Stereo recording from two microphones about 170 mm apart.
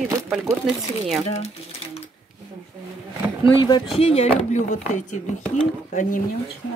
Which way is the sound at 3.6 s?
25° left (ahead or behind).